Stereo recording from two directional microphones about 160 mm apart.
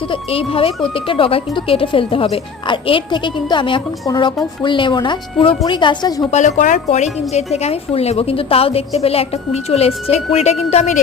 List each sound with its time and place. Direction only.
0.1 s a woman's voice: 35° left (ahead or behind)
6.3 s a woman's voice: 50° left (ahead or behind)